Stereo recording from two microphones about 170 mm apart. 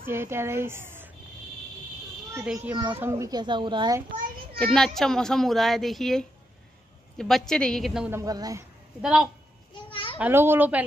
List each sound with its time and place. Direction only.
0.0 s speech: 15° right (ahead or behind)
2.3 s a child's voice: 10° right (ahead or behind); by 4.0 s 25° right (ahead or behind)
4.7 s a child's voice: centre (ahead or behind)
8.1 s speech: 20° right (ahead or behind)
9.0 s a child's voice: 5° right (ahead or behind)
9.8 s children playing: 30° left (ahead or behind)
10.1 s a child's voice: 10° right (ahead or behind)